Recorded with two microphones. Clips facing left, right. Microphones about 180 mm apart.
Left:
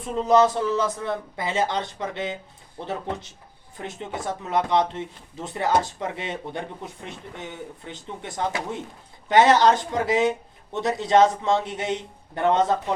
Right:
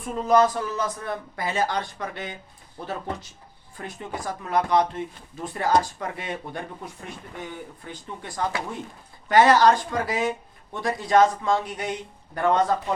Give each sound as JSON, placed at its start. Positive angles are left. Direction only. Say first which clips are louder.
{"t": 0.0, "sound": "speech", "louder": "left 1 dB", "side_deg": 25}